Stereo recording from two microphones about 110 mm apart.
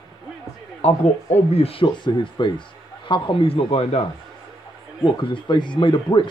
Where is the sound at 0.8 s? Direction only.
75° left (ahead or behind).